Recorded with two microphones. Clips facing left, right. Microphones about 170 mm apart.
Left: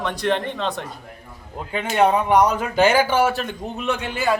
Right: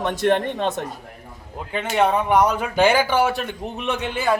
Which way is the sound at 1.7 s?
5° left (ahead or behind).